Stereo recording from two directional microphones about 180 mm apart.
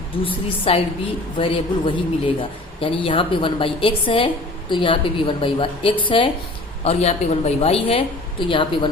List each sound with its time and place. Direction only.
0.7 s a woman's voice: 30° left (ahead or behind)